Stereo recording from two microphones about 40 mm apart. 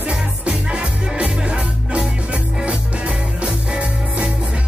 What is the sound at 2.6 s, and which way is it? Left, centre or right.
Music, right.